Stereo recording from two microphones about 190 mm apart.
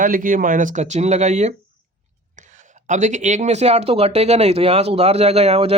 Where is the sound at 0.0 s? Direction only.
45° right (ahead or behind).